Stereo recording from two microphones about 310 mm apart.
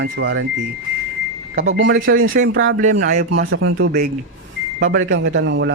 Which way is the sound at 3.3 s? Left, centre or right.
Right.